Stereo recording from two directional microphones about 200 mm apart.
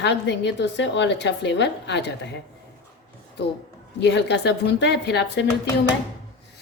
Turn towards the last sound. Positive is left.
turn(degrees=60)  # may be behind; listen again after turning